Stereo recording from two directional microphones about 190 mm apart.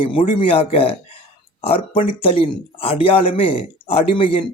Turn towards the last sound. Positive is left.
turn(degrees=30)  # may be behind; listen again after turning